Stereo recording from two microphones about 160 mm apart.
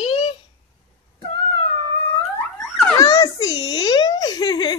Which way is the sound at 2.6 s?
5° left (ahead or behind).